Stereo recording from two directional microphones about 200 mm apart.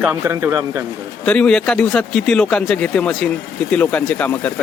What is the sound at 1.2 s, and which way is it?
Speech, 5° left (ahead or behind).